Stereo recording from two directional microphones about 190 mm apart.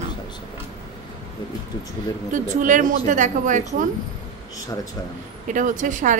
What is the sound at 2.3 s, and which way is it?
A woman's voice, 45° right (ahead or behind).